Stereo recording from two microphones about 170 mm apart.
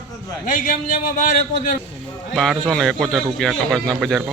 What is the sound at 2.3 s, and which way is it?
A man's voice, centre (ahead or behind).